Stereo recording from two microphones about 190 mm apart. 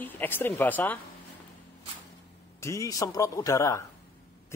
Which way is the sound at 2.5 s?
15° left (ahead or behind).